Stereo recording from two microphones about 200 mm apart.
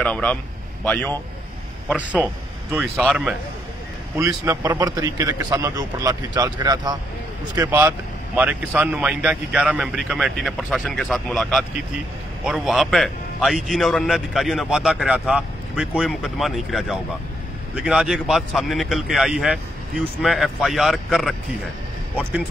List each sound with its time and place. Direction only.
0.0 s a man's voice: 5° left (ahead or behind)
1.9 s a man's voice: 5° right (ahead or behind)
4.2 s a man's voice: 15° right (ahead or behind); by 21.4 s centre (ahead or behind)